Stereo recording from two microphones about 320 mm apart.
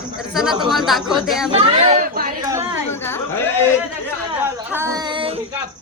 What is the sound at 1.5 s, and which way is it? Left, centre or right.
Speech, centre.